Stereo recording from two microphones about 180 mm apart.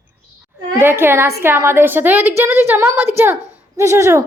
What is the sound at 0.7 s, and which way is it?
A woman's voice, 15° right (ahead or behind).